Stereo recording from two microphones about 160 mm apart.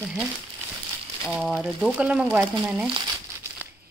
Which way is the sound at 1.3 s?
5° right (ahead or behind).